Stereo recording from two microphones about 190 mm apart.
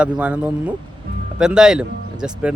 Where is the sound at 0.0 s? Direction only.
5° right (ahead or behind).